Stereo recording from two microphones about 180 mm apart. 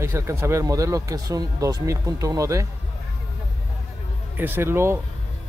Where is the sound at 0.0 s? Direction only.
15° right (ahead or behind).